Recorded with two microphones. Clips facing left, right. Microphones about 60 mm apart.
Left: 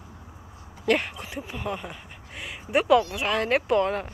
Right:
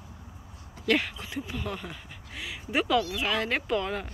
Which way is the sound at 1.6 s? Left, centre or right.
Centre.